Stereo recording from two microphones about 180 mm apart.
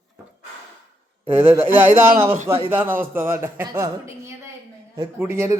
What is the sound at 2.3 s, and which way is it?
Speech, 30° right (ahead or behind).